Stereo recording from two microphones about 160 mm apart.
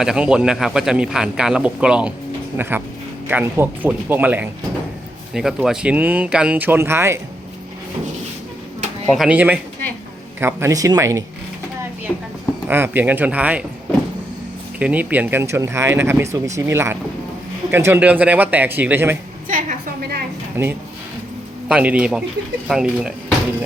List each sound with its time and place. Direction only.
0.0 s speech: 5° right (ahead or behind)
9.1 s speech: 5° right (ahead or behind)
12.6 s speech: 15° right (ahead or behind)
14.8 s speech: 10° right (ahead or behind)
19.5 s a sound: 55° right (ahead or behind); by 20.2 s 75° right (ahead or behind)
20.6 s speech: 15° right (ahead or behind)